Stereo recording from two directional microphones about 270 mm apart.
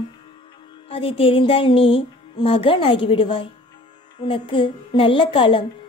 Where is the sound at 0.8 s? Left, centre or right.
Left.